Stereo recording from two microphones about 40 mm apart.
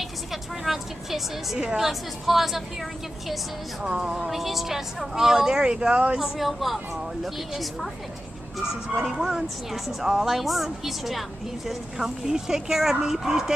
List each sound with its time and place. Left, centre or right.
0.0 s a sound: centre
1.8 s a woman's voice: centre
3.8 s speech: centre
4.3 s speech: centre; by 6.1 s right
6.1 s a woman's voice: centre
9.2 s a woman's voice: centre